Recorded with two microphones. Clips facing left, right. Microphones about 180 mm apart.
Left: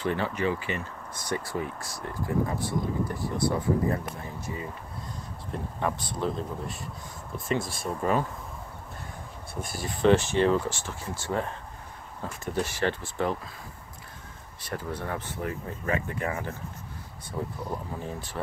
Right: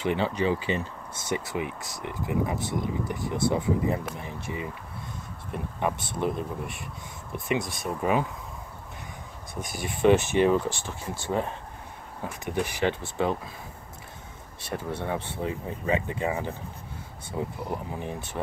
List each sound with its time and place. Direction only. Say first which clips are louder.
0.0 s speech: right 2 dB; 20° right (ahead or behind)
9.6 s speech: right 1 dB; 20° right (ahead or behind)
12.6 s speech: right 2 dB; 15° right (ahead or behind)
14.7 s speech: right 2 dB; 25° right (ahead or behind)